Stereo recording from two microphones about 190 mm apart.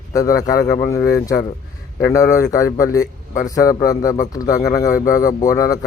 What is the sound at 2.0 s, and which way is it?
Speech, 15° left (ahead or behind).